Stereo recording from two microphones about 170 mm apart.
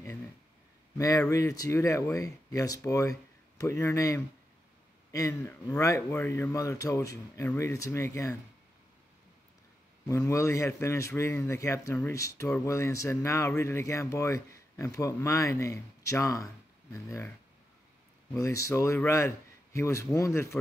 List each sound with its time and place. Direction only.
0.9 s speech: 20° left (ahead or behind)
10.0 s speech: 20° left (ahead or behind)
18.3 s speech: 20° left (ahead or behind)